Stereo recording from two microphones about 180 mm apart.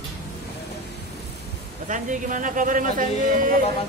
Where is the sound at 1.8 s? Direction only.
45° right (ahead or behind).